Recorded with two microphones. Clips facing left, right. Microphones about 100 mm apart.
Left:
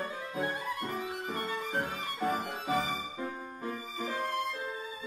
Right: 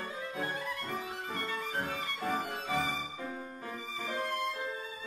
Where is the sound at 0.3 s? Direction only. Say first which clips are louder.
Left 3 dB; 20° left (ahead or behind).